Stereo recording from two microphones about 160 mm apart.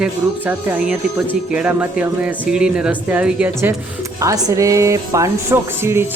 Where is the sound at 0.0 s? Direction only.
5° right (ahead or behind).